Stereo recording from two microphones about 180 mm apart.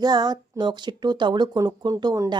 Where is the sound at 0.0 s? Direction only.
20° right (ahead or behind).